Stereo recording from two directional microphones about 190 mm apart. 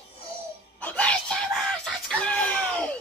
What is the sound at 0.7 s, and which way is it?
Screaming, 5° left (ahead or behind).